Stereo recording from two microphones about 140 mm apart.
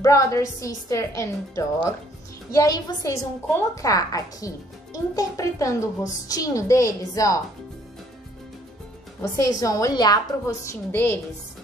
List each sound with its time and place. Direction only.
0.0 s a woman's voice: 25° left (ahead or behind)
9.4 s a woman's voice: 25° left (ahead or behind)